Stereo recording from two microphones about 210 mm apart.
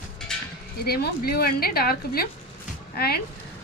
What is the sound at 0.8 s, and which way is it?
A woman's voice, 50° left (ahead or behind).